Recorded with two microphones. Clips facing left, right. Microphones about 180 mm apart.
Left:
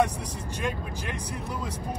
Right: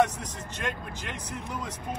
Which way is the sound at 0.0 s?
10° left (ahead or behind).